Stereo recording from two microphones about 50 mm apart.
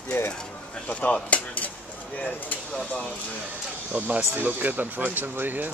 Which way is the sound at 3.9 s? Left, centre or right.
Right.